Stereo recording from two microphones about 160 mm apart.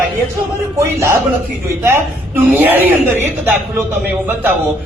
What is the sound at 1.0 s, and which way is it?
Speech, 15° right (ahead or behind).